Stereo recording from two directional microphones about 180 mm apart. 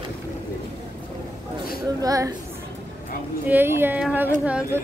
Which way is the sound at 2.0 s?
20° right (ahead or behind).